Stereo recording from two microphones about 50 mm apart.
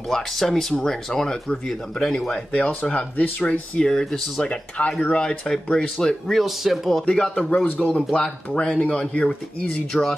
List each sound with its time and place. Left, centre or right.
0.1 s speech: centre
2.3 s speech: left
6.2 s speech: centre
7.1 s speech: centre
7.6 s speech: left
7.9 s speech: centre